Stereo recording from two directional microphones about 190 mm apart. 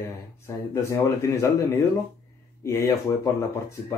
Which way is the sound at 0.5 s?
15° left (ahead or behind).